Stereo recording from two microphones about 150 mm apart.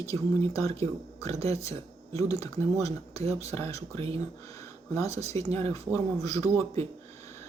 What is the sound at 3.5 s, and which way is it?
Speech, 20° left (ahead or behind).